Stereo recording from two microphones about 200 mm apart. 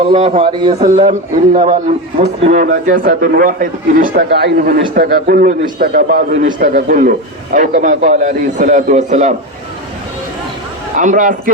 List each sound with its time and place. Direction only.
0.0 s a man's voice: 35° right (ahead or behind)
10.9 s a man's voice: 40° right (ahead or behind)